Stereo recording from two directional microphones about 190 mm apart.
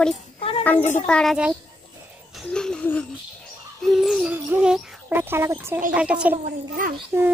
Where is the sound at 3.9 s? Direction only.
Centre (ahead or behind).